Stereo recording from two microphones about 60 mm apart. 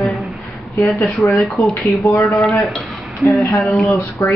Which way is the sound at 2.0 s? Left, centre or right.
Left.